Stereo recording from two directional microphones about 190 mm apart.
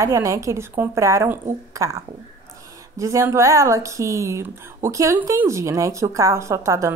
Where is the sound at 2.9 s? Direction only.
15° right (ahead or behind).